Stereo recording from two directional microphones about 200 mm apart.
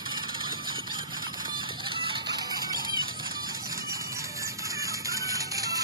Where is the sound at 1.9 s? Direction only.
25° right (ahead or behind).